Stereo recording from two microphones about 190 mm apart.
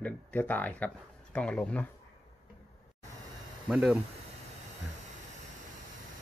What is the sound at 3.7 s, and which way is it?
Speech, 5° right (ahead or behind).